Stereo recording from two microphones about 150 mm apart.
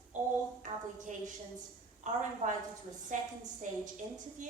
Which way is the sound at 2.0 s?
55° right (ahead or behind).